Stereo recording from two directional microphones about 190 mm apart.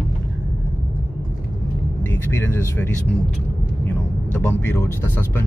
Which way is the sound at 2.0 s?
10° left (ahead or behind).